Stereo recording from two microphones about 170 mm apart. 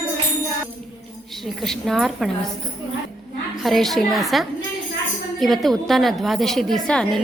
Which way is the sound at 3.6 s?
Centre (ahead or behind).